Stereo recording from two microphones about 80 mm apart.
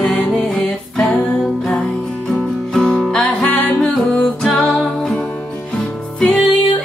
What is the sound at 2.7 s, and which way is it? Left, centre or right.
Music, centre.